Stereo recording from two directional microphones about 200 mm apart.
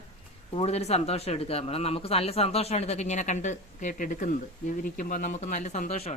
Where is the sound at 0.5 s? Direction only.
30° left (ahead or behind).